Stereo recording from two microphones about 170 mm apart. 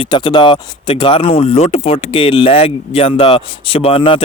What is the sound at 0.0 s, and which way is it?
Speech, 30° left (ahead or behind).